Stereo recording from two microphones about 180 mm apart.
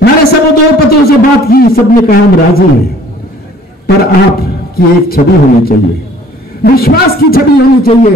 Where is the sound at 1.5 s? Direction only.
55° left (ahead or behind).